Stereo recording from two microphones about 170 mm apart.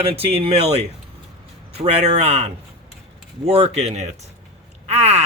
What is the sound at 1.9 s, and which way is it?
Speech, 40° right (ahead or behind).